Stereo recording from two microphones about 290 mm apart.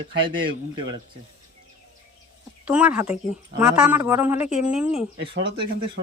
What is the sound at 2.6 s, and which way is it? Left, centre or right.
A man's voice, centre.